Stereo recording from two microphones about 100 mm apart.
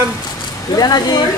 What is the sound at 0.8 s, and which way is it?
Speech, 45° left (ahead or behind).